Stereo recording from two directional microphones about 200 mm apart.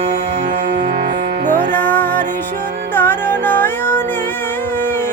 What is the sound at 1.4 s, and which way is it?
Music, 40° right (ahead or behind).